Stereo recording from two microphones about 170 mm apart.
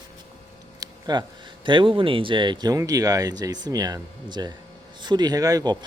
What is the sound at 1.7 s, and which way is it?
Speech, 30° right (ahead or behind).